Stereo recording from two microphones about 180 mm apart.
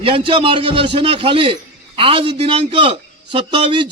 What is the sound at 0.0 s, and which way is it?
Speech, 30° right (ahead or behind).